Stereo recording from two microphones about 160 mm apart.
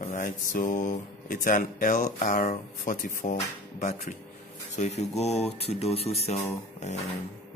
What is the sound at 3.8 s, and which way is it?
Speech, 50° left (ahead or behind).